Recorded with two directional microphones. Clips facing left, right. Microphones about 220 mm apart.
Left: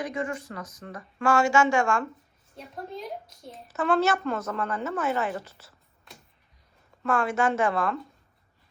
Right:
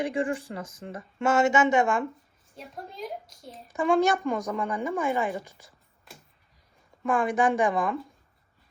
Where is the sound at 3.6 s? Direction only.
15° right (ahead or behind).